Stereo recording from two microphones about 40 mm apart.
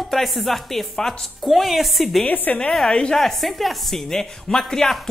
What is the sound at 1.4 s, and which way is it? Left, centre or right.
Speech, centre.